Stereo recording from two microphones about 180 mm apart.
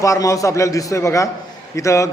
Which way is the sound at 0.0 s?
15° left (ahead or behind).